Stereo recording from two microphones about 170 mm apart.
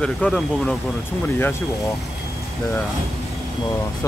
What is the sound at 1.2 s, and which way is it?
Speech, 15° left (ahead or behind).